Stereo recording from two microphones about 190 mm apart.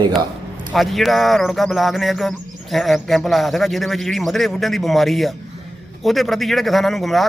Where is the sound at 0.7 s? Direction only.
Centre (ahead or behind).